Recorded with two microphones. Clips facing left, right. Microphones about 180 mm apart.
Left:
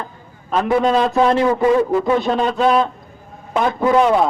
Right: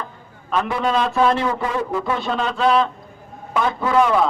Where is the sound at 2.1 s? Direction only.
40° left (ahead or behind).